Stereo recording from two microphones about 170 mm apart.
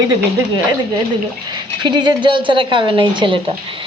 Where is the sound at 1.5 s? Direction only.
25° right (ahead or behind).